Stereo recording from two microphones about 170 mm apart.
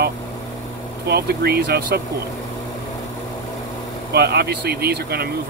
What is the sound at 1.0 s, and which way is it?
Speech, 70° right (ahead or behind).